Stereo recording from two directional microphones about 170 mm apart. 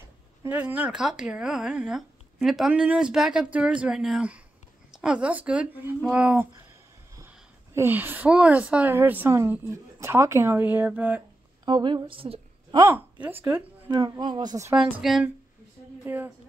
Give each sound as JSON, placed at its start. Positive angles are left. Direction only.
{"t": 0.4, "sound": "speech", "side_deg": -10}
{"t": 11.6, "sound": "a woman's voice", "side_deg": -25}
{"t": 12.8, "sound": "speech", "side_deg": -10}
{"t": 13.8, "sound": "speech", "side_deg": -25}
{"t": 14.8, "sound": "speech", "side_deg": -5}